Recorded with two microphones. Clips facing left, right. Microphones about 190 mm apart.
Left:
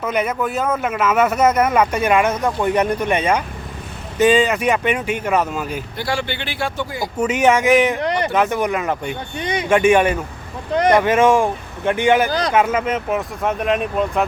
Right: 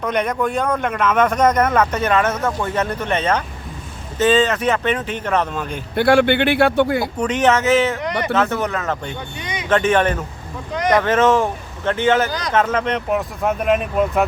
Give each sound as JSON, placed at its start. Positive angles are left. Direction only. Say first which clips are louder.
{"t": 0.0, "sound": "speech", "louder": "right 1 dB", "side_deg": 5}
{"t": 6.0, "sound": "speech", "louder": "right 12 dB", "side_deg": -60}
{"t": 7.2, "sound": "speech", "louder": "left 3 dB", "side_deg": 10}
{"t": 12.3, "sound": "a man's voice", "louder": "left 5 dB", "side_deg": 30}
{"t": 12.5, "sound": "speech", "louder": "right 1 dB", "side_deg": 10}